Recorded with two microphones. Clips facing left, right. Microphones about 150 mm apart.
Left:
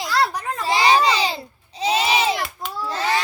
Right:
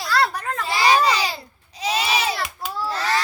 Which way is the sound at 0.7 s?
25° left (ahead or behind).